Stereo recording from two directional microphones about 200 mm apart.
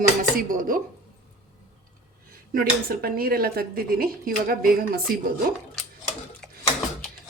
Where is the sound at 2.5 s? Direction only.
50° right (ahead or behind).